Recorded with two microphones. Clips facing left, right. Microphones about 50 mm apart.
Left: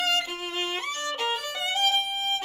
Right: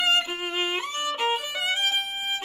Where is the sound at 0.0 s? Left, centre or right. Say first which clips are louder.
Right 3 dB; right.